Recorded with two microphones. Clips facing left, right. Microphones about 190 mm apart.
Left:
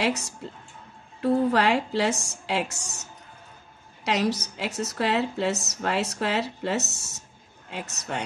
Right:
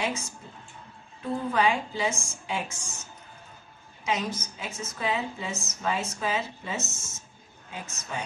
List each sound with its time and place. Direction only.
0.0 s a woman's voice: 75° left (ahead or behind)